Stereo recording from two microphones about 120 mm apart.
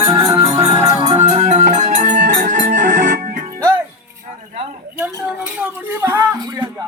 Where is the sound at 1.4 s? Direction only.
70° right (ahead or behind); by 3.4 s 90° right.